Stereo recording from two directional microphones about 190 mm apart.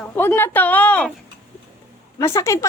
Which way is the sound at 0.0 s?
10° left (ahead or behind).